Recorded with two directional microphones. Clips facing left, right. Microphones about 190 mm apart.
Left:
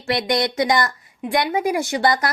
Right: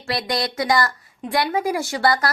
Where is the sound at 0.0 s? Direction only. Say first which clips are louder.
Left 4 dB; 20° left (ahead or behind).